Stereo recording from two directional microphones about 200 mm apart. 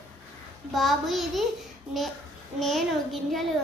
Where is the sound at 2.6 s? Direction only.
Centre (ahead or behind).